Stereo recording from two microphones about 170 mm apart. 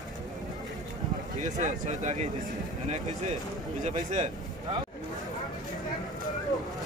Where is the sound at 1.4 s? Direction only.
45° right (ahead or behind).